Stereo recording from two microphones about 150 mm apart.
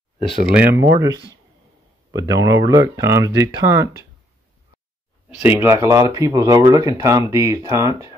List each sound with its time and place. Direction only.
0.6 s speech: 20° right (ahead or behind)
5.4 s speech: 15° right (ahead or behind)